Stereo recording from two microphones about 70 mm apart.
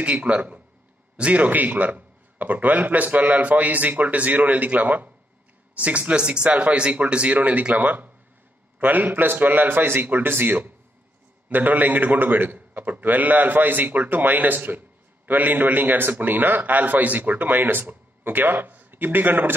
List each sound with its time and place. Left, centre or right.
0.0 s a man's voice: centre